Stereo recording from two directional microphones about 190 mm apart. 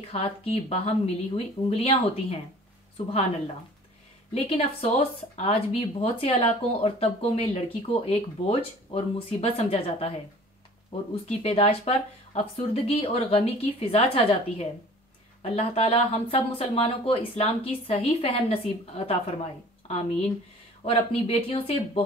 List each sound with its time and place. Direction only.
0.1 s speech: 30° left (ahead or behind)
4.3 s speech: 30° left (ahead or behind)
11.2 s speech: 35° left (ahead or behind)